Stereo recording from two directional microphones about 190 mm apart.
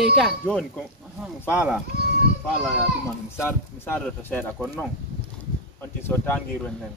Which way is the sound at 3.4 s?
10° left (ahead or behind).